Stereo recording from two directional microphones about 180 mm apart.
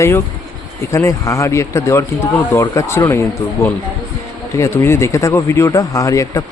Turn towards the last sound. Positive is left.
turn(degrees=20)  # may be behind; listen again after turning